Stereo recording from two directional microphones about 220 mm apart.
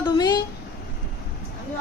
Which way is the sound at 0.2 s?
20° left (ahead or behind).